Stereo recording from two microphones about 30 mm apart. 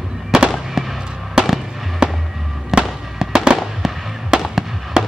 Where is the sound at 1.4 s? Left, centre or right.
Right.